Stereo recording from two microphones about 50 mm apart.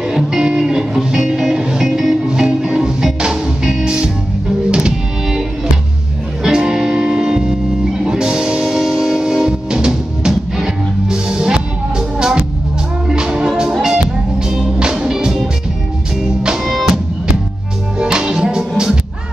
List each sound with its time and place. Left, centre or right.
0.3 s music: centre
6.4 s music: centre
13.1 s music: centre